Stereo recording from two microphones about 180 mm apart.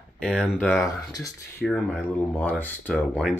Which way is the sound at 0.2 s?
5° right (ahead or behind).